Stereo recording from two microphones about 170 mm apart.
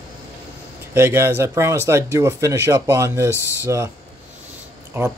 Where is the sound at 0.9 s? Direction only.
15° right (ahead or behind).